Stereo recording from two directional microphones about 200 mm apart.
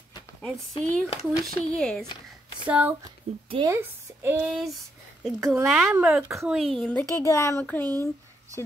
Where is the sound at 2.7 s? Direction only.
5° right (ahead or behind).